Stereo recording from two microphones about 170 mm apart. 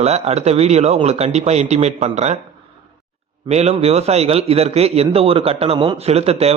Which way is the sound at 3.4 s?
40° right (ahead or behind).